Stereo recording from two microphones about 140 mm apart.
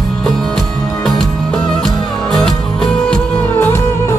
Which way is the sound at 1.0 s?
5° left (ahead or behind).